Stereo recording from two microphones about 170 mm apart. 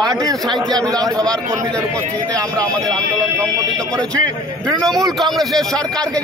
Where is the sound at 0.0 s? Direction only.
20° right (ahead or behind).